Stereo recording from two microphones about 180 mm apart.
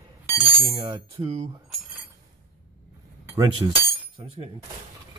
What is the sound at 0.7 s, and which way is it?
Speech, 30° right (ahead or behind).